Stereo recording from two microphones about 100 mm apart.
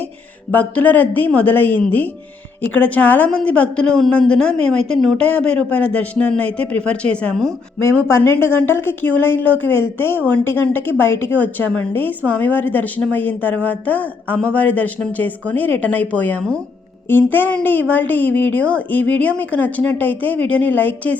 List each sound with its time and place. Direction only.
0.5 s speech: 15° left (ahead or behind)
7.9 s speech: 20° left (ahead or behind)